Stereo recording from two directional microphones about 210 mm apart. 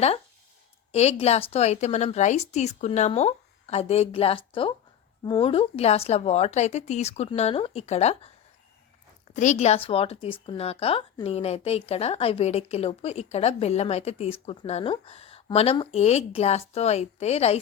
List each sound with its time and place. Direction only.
0.9 s a woman's voice: 30° left (ahead or behind)
9.3 s speech: 35° left (ahead or behind)